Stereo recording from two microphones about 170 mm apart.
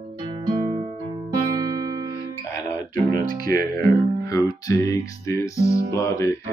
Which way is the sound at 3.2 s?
60° right (ahead or behind).